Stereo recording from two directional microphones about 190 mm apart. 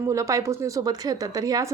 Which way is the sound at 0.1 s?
15° right (ahead or behind).